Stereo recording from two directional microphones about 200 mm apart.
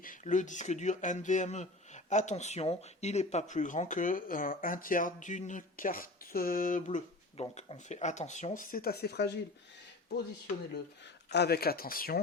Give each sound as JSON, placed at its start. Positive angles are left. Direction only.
{"t": 0.0, "sound": "speech", "side_deg": 40}
{"t": 11.3, "sound": "speech", "side_deg": 55}